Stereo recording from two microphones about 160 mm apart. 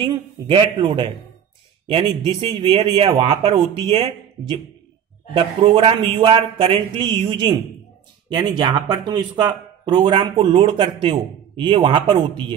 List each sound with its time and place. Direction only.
0.0 s a man's voice: 30° right (ahead or behind)
5.8 s a man's voice: 30° right (ahead or behind)